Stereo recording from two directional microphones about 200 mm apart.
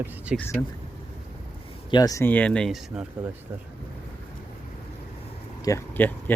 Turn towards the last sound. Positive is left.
turn(degrees=10)  # may be behind; listen again after turning